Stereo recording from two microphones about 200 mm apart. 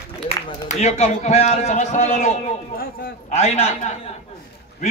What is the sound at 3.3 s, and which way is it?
Speech, 35° left (ahead or behind).